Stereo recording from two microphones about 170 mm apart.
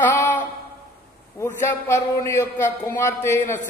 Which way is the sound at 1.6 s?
15° left (ahead or behind).